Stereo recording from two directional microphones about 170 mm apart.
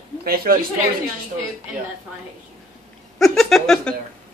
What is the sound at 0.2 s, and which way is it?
Speech, 60° right (ahead or behind).